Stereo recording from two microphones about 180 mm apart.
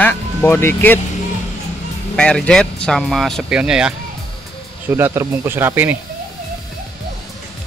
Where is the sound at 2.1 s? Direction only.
5° left (ahead or behind); by 6.0 s 10° right (ahead or behind).